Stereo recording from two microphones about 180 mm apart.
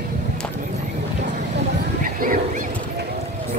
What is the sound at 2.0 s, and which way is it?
Bow-wow, 50° right (ahead or behind).